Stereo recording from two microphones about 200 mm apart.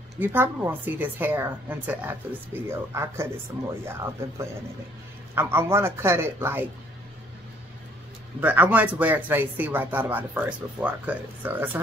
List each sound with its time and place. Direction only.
0.2 s speech: 10° right (ahead or behind)
8.4 s speech: 10° right (ahead or behind)